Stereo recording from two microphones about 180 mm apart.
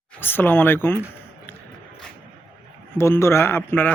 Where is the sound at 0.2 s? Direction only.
10° left (ahead or behind).